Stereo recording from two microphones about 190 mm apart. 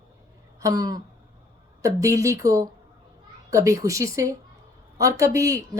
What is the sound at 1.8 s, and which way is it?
Speech, 15° right (ahead or behind).